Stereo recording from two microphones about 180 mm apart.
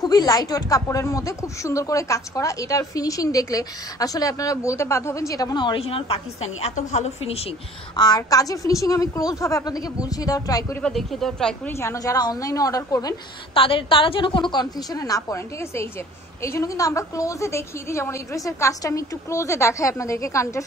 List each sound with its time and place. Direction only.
0.0 s speech: 20° left (ahead or behind); by 7.4 s 35° left (ahead or behind)
7.9 s speech: 20° left (ahead or behind)
10.8 s speech: centre (ahead or behind)
11.8 s speech: 15° left (ahead or behind)
13.6 s a woman's voice: 30° left (ahead or behind)